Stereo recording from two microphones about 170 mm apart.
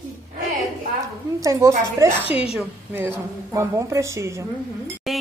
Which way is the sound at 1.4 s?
20° right (ahead or behind).